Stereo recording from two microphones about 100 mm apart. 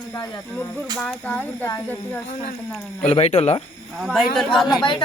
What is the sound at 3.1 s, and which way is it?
Speech, 90° left.